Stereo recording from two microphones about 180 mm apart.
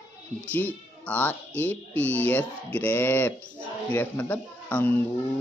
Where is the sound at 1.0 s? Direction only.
10° left (ahead or behind).